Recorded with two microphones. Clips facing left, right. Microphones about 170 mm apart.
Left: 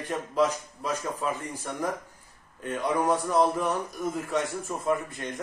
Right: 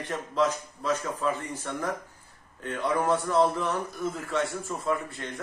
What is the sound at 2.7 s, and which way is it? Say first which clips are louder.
A man's voice: even; 10° left (ahead or behind).